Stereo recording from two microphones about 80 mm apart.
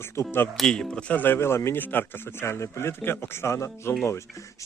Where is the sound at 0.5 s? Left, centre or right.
Centre.